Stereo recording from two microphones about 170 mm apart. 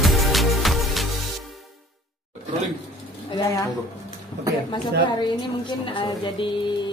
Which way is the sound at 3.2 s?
20° left (ahead or behind).